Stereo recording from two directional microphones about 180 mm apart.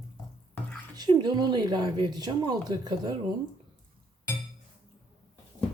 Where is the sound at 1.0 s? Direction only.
25° right (ahead or behind).